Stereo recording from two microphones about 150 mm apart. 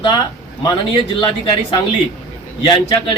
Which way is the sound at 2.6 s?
30° left (ahead or behind).